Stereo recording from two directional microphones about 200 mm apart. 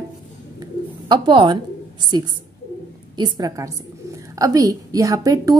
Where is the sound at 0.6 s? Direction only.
20° right (ahead or behind).